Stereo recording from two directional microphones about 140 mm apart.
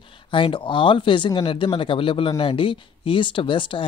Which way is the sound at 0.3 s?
35° left (ahead or behind).